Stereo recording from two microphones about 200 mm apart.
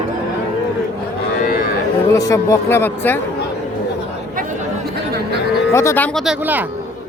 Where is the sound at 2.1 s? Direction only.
15° left (ahead or behind).